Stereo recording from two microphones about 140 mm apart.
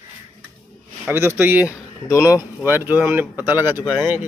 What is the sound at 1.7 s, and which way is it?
Speech, 20° left (ahead or behind).